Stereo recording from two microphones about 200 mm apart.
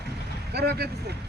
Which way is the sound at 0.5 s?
55° right (ahead or behind).